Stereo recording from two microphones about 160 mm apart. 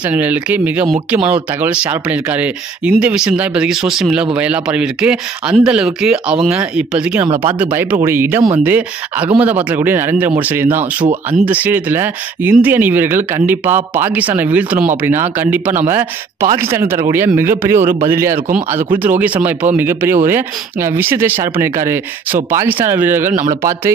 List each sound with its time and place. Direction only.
0.1 s speech: 10° right (ahead or behind)